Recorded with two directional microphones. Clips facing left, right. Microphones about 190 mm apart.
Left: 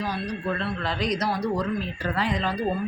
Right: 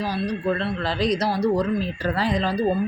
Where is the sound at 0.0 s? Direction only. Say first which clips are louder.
Right 4 dB; 35° right (ahead or behind).